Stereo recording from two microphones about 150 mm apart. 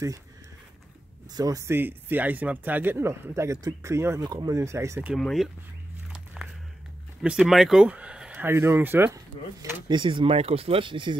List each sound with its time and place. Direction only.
1.3 s speech: 25° right (ahead or behind)
5.1 s speech: centre (ahead or behind)
6.1 s walk: 5° right (ahead or behind)
7.2 s speech: 5° right (ahead or behind)
9.8 s speech: 35° right (ahead or behind)